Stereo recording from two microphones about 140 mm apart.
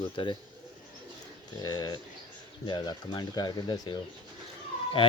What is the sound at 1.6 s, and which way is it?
Speech, 30° left (ahead or behind).